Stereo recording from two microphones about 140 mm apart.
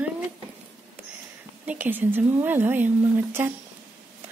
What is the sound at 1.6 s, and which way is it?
A woman's voice, 15° right (ahead or behind).